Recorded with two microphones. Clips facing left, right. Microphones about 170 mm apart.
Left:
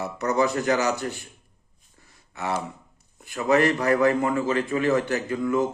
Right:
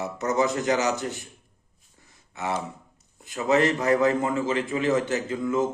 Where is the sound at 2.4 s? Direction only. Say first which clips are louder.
Left 1 dB; 20° right (ahead or behind).